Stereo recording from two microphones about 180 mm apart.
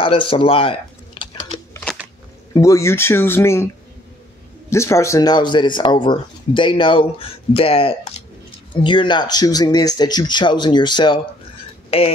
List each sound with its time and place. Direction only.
0.0 s speech: 30° left (ahead or behind)
1.7 s a sound: 10° left (ahead or behind)
2.5 s speech: 15° left (ahead or behind)
4.6 s speech: 15° left (ahead or behind); by 12.1 s 30° left (ahead or behind)